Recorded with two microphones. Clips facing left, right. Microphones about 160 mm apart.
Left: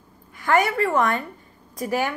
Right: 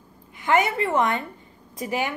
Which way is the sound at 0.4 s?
20° right (ahead or behind).